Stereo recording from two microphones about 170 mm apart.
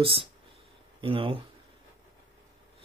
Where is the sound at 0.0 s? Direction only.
30° right (ahead or behind).